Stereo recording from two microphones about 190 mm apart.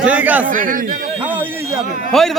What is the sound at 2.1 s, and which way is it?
Speech, centre (ahead or behind).